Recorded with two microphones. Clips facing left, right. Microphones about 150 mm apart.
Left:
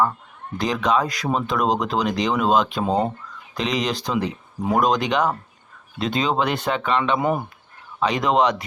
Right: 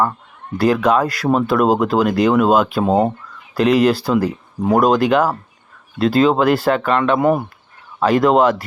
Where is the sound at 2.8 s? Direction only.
45° right (ahead or behind).